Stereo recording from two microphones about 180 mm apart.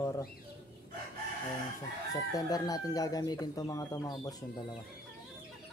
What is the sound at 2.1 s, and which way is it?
Speech, 20° left (ahead or behind).